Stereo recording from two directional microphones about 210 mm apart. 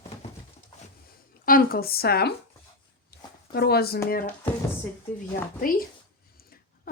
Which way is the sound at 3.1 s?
50° left (ahead or behind).